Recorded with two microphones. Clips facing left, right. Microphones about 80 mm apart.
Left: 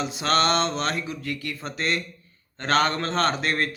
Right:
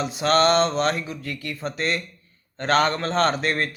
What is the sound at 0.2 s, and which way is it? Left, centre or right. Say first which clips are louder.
A man's voice: right 4 dB; right.